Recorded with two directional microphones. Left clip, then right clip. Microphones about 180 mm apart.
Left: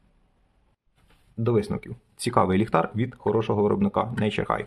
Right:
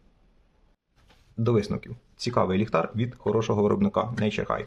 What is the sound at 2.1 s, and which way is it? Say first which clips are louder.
Speech: left 3 dB; 20° left (ahead or behind).